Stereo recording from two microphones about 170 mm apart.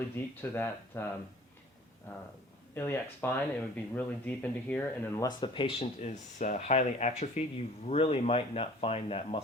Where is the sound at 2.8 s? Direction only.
15° left (ahead or behind).